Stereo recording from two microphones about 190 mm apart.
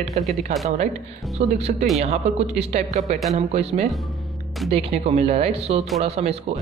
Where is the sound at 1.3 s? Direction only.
35° right (ahead or behind).